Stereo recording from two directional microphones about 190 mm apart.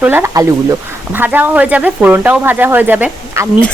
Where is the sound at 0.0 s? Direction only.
10° right (ahead or behind).